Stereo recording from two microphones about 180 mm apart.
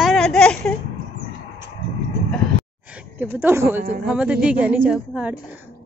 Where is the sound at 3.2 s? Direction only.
10° right (ahead or behind).